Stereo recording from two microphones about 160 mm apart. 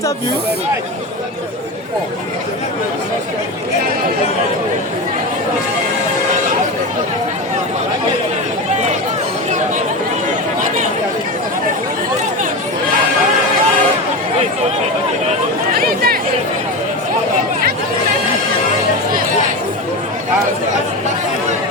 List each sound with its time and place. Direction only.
15.7 s chatter: 70° right (ahead or behind)